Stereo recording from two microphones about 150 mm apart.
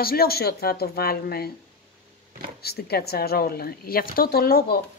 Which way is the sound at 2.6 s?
90° left.